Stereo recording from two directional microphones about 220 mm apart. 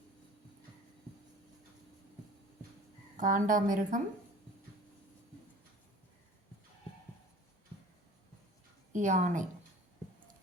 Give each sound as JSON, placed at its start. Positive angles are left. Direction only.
{"t": 3.2, "sound": "speech", "side_deg": -35}
{"t": 8.9, "sound": "a woman's voice", "side_deg": -35}